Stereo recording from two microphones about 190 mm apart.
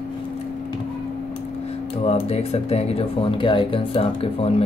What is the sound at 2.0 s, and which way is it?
Speech, 30° left (ahead or behind).